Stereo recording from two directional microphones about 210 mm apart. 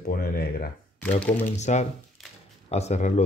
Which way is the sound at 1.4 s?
35° left (ahead or behind).